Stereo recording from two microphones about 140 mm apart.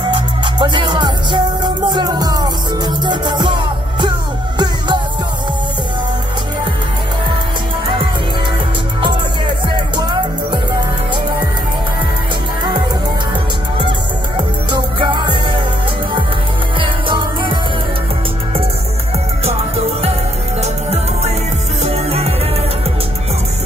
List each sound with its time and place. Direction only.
0.1 s music: 35° right (ahead or behind)
9.9 s music: 30° right (ahead or behind)
13.7 s music: 35° right (ahead or behind)
16.8 s music: 35° right (ahead or behind)
20.6 s music: 50° right (ahead or behind)